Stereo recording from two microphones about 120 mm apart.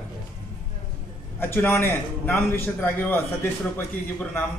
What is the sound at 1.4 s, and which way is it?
A man's voice, 20° left (ahead or behind).